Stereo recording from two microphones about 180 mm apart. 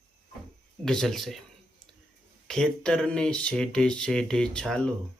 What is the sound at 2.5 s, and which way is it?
Speech, 5° left (ahead or behind).